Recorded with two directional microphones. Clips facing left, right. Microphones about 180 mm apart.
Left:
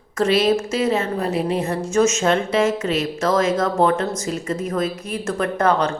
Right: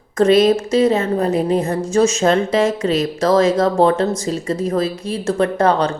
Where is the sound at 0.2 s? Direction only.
40° right (ahead or behind).